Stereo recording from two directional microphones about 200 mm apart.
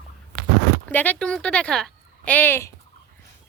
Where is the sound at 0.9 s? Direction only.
10° left (ahead or behind).